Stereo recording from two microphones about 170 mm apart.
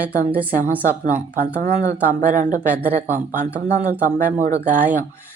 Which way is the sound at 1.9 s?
10° right (ahead or behind).